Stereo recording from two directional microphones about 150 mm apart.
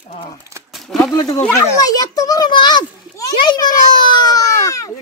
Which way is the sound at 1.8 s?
25° left (ahead or behind).